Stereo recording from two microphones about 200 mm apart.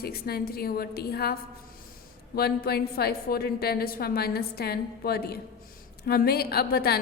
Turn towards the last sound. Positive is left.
turn(degrees=50)  # may be behind; listen again after turning